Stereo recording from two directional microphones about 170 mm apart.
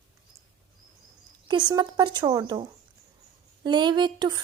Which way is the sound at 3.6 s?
25° right (ahead or behind).